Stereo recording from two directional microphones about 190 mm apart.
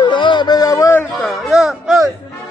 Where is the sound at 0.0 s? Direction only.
25° left (ahead or behind).